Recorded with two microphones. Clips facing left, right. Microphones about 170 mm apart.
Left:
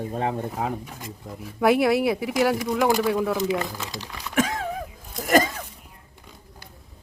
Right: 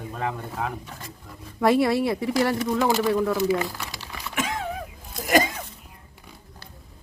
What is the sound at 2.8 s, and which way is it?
Speech, 15° left (ahead or behind).